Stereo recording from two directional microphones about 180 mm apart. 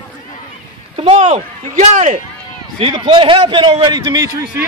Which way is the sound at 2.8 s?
25° right (ahead or behind).